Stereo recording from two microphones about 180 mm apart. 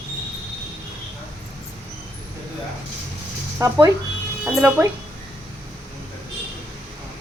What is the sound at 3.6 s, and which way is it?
Speech, 20° right (ahead or behind).